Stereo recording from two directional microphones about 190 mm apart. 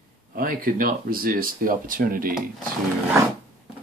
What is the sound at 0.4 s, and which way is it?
Speech, 50° right (ahead or behind).